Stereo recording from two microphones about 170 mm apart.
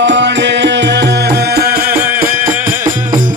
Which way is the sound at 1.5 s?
60° right (ahead or behind).